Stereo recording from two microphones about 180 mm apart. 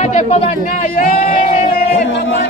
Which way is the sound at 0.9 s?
50° left (ahead or behind).